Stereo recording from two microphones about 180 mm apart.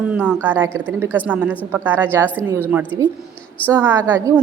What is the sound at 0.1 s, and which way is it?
A woman's voice, 10° right (ahead or behind).